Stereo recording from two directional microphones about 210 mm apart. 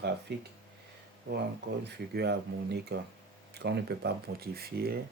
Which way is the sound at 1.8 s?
50° right (ahead or behind).